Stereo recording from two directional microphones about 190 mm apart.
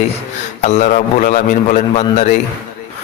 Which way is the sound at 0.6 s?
40° left (ahead or behind).